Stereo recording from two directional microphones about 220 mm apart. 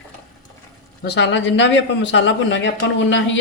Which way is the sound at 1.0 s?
50° left (ahead or behind).